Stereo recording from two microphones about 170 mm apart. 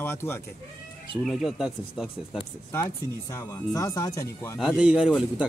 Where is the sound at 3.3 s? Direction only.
20° left (ahead or behind).